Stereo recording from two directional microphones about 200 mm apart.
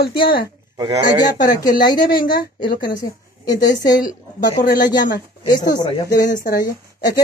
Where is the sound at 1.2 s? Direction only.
20° left (ahead or behind).